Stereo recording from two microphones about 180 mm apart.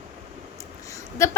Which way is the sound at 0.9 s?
15° left (ahead or behind).